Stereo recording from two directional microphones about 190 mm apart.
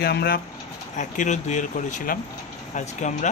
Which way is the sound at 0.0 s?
55° left (ahead or behind).